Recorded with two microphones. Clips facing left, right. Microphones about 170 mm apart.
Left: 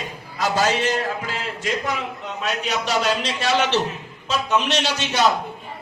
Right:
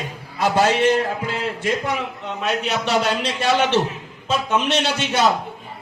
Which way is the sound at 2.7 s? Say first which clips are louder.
Even; 60° right (ahead or behind).